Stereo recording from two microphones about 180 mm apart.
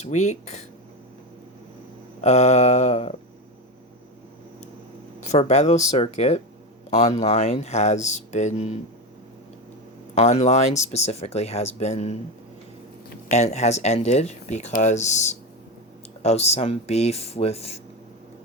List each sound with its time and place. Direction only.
0.0 s speech: 40° left (ahead or behind)
2.2 s speech: 40° left (ahead or behind)
5.3 s speech: 40° left (ahead or behind)
10.2 s speech: 35° left (ahead or behind)
13.3 s speech: 40° left (ahead or behind)